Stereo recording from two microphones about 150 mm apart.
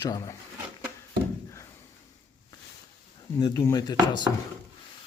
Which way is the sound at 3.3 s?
20° left (ahead or behind).